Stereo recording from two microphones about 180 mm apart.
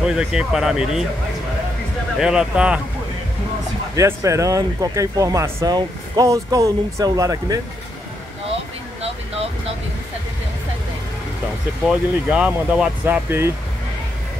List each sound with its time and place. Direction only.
0.0 s speech: 5° right (ahead or behind)
2.1 s speech: 5° right (ahead or behind)
3.9 s speech: 15° right (ahead or behind)
9.0 s vehicle: 35° right (ahead or behind)
11.9 s speech: 5° right (ahead or behind)